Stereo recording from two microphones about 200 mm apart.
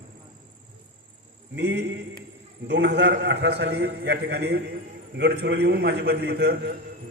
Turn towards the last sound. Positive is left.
turn(degrees=-50)  # may be behind; listen again after turning